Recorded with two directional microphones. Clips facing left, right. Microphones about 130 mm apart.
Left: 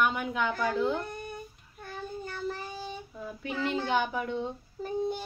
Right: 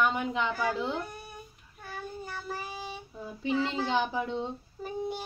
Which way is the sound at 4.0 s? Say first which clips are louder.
Even; 25° right (ahead or behind).